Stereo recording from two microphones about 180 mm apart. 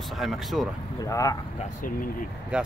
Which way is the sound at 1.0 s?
20° left (ahead or behind).